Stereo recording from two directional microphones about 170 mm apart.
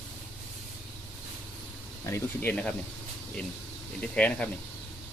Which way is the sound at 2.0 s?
10° left (ahead or behind).